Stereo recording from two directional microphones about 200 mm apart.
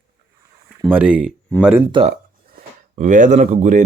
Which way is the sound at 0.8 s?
10° right (ahead or behind).